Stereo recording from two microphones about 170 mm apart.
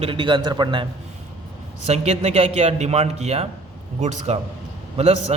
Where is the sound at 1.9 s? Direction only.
40° right (ahead or behind).